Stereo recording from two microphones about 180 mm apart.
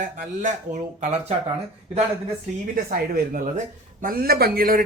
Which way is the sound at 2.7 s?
50° right (ahead or behind).